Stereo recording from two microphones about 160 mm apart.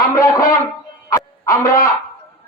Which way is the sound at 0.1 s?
25° left (ahead or behind).